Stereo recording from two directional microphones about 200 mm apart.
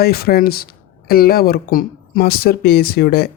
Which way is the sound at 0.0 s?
50° left (ahead or behind).